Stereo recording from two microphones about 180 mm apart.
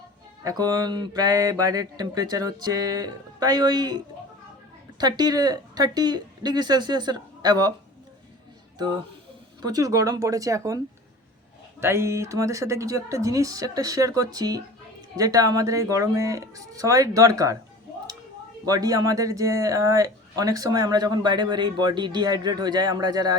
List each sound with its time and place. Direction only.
0.4 s speech: 20° right (ahead or behind)
9.6 s speech: 20° right (ahead or behind)
11.8 s speech: 15° right (ahead or behind)
18.6 s speech: 20° right (ahead or behind)